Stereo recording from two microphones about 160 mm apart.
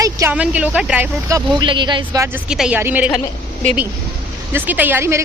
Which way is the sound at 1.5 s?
30° right (ahead or behind).